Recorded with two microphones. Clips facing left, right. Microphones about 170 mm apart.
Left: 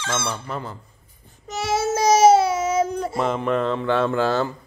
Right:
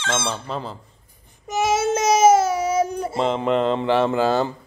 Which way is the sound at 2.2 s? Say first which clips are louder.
Even; 45° right (ahead or behind).